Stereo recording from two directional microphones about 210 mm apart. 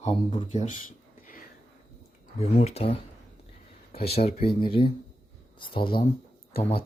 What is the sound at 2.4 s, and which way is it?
Speech, 30° left (ahead or behind).